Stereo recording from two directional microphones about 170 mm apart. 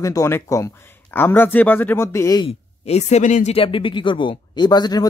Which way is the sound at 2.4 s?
40° left (ahead or behind).